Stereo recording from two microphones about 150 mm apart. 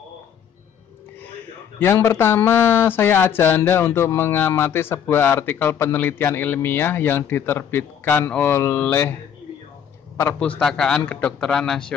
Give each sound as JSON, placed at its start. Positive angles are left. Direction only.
{"t": 1.8, "sound": "speech", "side_deg": 15}
{"t": 10.1, "sound": "speech", "side_deg": 15}
{"t": 10.6, "sound": "a man's voice", "side_deg": 5}